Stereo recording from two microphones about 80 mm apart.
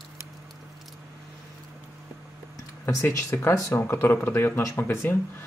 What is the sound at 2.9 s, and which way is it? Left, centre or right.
Speech, left.